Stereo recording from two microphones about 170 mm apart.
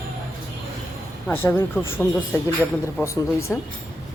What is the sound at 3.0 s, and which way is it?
Speech, 15° left (ahead or behind).